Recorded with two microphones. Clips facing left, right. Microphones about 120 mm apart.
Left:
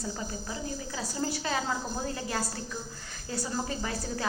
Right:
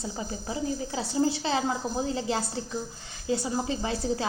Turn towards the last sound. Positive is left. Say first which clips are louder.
# right 5 dB
turn(degrees=-25)  # may be behind; listen again after turning